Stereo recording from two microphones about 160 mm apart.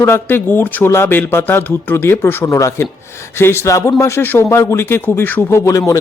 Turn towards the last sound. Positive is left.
turn(degrees=20)  # may be behind; listen again after turning